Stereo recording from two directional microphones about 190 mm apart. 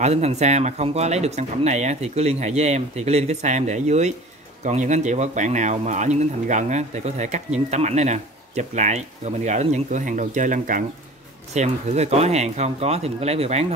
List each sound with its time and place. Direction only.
0.0 s speech: 35° right (ahead or behind)